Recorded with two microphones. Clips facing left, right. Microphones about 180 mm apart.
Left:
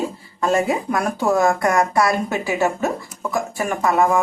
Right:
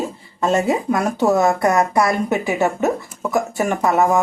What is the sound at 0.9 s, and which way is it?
Speech, 20° right (ahead or behind).